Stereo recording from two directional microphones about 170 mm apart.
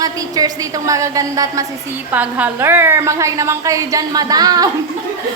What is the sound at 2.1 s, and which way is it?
A woman's voice, 10° right (ahead or behind).